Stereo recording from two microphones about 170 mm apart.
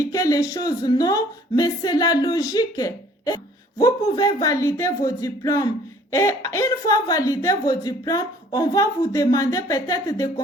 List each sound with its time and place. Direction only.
0.0 s speech: 20° left (ahead or behind)